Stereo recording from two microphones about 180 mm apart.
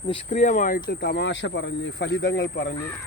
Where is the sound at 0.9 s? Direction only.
65° left (ahead or behind).